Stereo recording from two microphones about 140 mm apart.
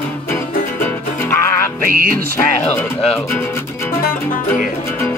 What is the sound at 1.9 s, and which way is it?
Music, 90° right.